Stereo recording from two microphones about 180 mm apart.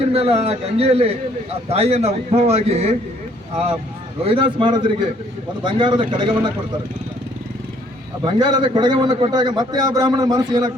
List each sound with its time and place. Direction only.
0.1 s a man's voice: 35° right (ahead or behind)
4.2 s a man's voice: 30° right (ahead or behind)
8.2 s a man's voice: 20° right (ahead or behind)